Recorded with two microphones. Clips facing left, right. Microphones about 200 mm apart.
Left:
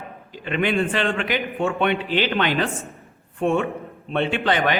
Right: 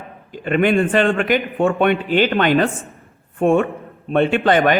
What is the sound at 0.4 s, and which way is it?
A man's voice, 50° right (ahead or behind).